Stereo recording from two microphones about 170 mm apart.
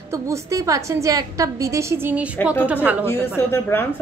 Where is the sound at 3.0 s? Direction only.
15° left (ahead or behind).